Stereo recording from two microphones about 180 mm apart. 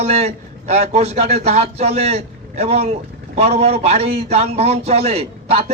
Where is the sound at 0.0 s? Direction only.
35° right (ahead or behind).